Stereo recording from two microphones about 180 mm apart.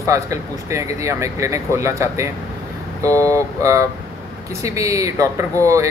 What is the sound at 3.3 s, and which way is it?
Speech, 15° right (ahead or behind).